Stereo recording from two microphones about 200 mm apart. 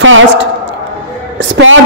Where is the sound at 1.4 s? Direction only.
65° right (ahead or behind).